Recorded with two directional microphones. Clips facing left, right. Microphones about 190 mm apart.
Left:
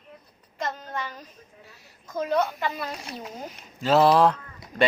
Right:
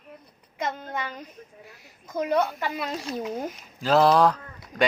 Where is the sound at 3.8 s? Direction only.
Centre (ahead or behind).